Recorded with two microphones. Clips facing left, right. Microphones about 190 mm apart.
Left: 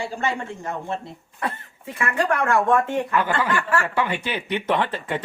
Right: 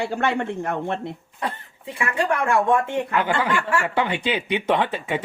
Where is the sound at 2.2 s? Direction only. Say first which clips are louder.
Even; 10° right (ahead or behind).